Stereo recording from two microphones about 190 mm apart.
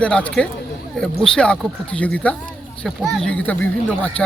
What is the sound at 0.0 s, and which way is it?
Speech, 5° left (ahead or behind).